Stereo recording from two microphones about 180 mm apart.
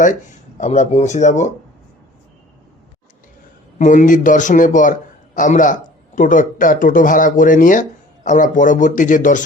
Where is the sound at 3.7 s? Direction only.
45° left (ahead or behind).